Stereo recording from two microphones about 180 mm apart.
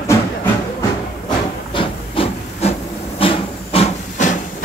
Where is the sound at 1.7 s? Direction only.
30° left (ahead or behind).